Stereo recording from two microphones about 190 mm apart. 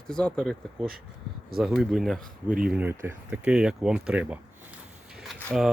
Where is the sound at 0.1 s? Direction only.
5° left (ahead or behind).